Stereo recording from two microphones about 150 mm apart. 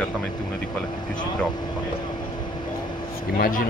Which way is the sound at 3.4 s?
60° left (ahead or behind).